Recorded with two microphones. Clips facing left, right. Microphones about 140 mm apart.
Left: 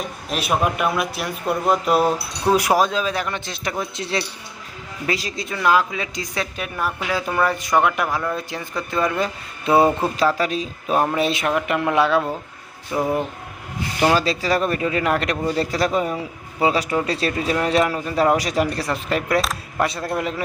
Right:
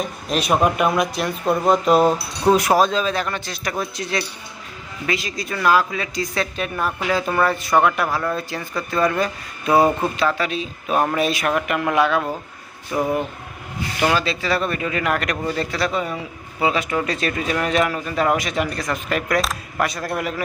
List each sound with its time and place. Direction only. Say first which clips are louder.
0.3 s speech: right 3 dB; 5° left (ahead or behind); by 5.3 s 35° left (ahead or behind)
5.4 s speech: right 1 dB; 20° left (ahead or behind)
10.3 s speech: left 2 dB; 40° left (ahead or behind)
10.8 s speech: even; 5° right (ahead or behind)
11.1 s speech: even; 25° left (ahead or behind)
12.9 s speech: even; 20° left (ahead or behind)
14.0 s speech: left 2 dB; 35° left (ahead or behind)
19.4 s speech: even; centre (ahead or behind)
19.8 s speech: left 1 dB; 25° left (ahead or behind)